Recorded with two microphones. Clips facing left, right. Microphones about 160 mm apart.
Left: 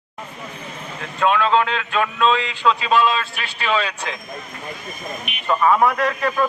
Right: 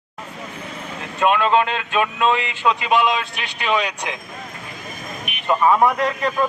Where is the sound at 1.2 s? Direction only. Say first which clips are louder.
Even; 15° right (ahead or behind).